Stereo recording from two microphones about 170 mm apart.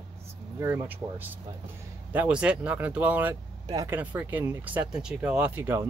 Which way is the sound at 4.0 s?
10° right (ahead or behind).